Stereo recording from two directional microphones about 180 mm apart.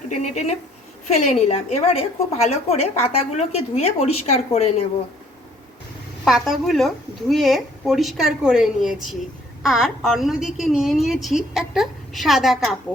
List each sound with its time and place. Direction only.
0.1 s a woman's voice: 40° left (ahead or behind)
6.2 s a woman's voice: centre (ahead or behind)